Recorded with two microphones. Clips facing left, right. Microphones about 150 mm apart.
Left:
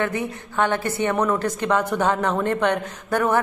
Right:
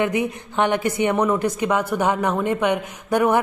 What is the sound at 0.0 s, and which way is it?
Speech, 15° right (ahead or behind).